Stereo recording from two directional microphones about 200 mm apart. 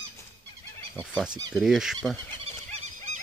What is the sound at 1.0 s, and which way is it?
Speech, centre (ahead or behind).